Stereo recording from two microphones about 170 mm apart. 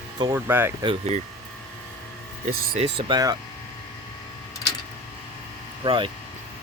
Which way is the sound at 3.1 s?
20° right (ahead or behind).